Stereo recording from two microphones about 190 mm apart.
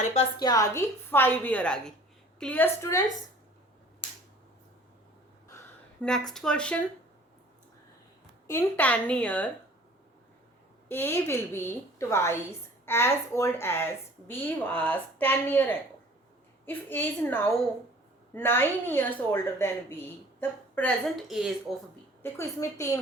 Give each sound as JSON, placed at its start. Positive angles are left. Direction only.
{"t": 0.0, "sound": "a woman's voice", "side_deg": 35}
{"t": 0.3, "sound": "a woman's voice", "side_deg": 20}
{"t": 6.0, "sound": "speech", "side_deg": 5}
{"t": 8.4, "sound": "a woman's voice", "side_deg": 10}
{"t": 10.8, "sound": "a woman's voice", "side_deg": 10}
{"t": 22.2, "sound": "a woman's voice", "side_deg": 15}